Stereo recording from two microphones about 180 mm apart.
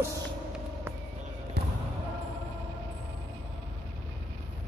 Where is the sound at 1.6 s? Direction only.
65° right (ahead or behind).